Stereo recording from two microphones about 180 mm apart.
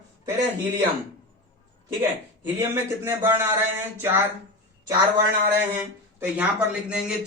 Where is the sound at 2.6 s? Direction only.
15° right (ahead or behind).